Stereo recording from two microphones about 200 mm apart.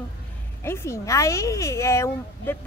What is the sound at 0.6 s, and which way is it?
Speech, 10° left (ahead or behind).